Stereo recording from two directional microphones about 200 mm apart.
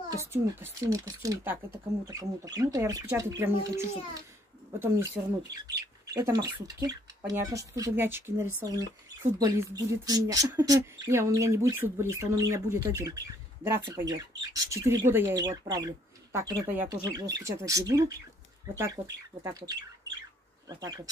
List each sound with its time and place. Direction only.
0.3 s speech: 10° right (ahead or behind)
19.4 s speech: 20° right (ahead or behind)